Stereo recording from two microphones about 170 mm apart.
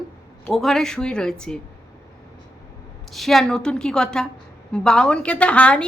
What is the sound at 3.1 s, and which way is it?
A woman's voice, centre (ahead or behind).